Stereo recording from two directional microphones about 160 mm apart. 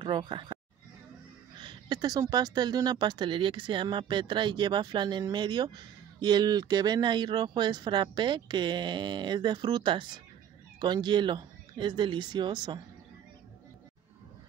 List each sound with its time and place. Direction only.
0.0 s speech: 30° right (ahead or behind)
1.6 s speech: 30° right (ahead or behind)